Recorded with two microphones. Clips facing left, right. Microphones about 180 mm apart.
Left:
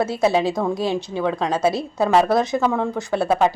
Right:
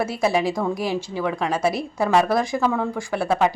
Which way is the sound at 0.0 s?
20° left (ahead or behind).